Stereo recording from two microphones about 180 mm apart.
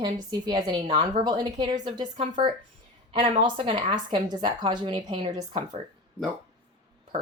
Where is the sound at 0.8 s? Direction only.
35° right (ahead or behind).